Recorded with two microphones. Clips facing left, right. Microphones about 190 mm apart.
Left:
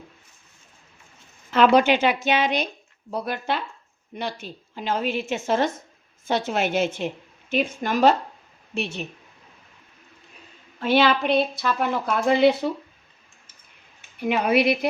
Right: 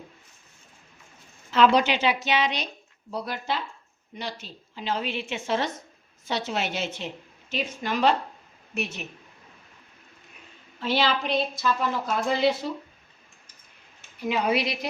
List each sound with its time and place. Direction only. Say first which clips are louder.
1.5 s a woman's voice: left 3 dB; 55° left (ahead or behind)
8.7 s a woman's voice: left 3 dB; 30° left (ahead or behind)
10.8 s a woman's voice: left 6 dB; 55° left (ahead or behind)
14.2 s a woman's voice: left 4 dB; 60° left (ahead or behind)